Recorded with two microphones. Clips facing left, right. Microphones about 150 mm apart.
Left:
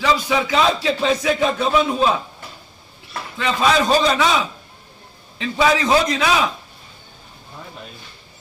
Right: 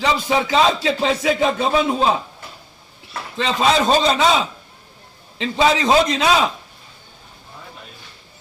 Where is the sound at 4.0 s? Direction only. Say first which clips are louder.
Right 1 dB; 25° right (ahead or behind).